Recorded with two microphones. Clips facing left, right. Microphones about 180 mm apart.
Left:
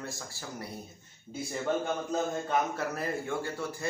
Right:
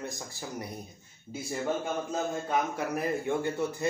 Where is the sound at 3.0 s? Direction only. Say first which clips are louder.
Right 4 dB; 20° right (ahead or behind).